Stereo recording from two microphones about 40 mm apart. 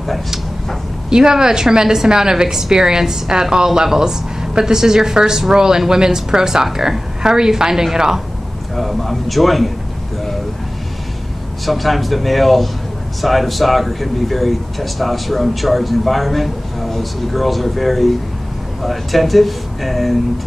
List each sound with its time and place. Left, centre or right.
1.1 s a woman's voice: centre
8.7 s speech: centre
11.6 s speech: centre